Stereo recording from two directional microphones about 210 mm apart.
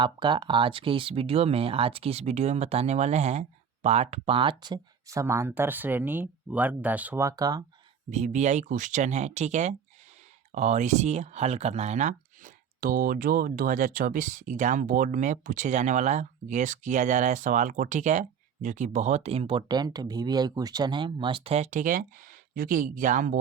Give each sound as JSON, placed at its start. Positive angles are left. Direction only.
{"t": 0.0, "sound": "speech", "side_deg": -20}
{"t": 8.1, "sound": "speech", "side_deg": -35}